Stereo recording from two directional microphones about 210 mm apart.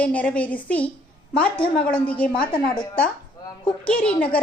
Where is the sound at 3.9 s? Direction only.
5° left (ahead or behind).